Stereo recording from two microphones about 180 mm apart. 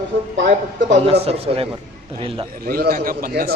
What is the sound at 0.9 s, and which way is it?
Speech, 35° right (ahead or behind).